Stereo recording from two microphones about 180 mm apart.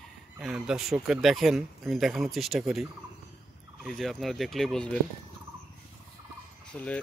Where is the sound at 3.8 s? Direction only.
Centre (ahead or behind).